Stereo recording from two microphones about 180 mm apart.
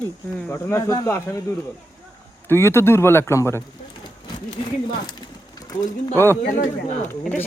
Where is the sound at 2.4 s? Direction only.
15° left (ahead or behind).